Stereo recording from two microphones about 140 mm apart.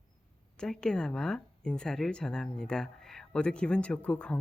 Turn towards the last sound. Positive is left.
turn(degrees=10)  # may be behind; listen again after turning